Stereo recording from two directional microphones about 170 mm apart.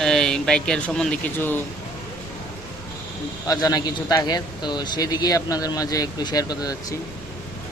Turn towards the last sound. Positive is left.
turn(degrees=20)  # may be behind; listen again after turning